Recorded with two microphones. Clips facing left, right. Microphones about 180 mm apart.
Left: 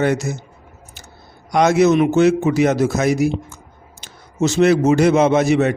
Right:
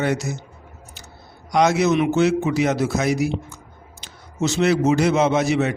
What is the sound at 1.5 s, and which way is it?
A man's voice, 50° left (ahead or behind).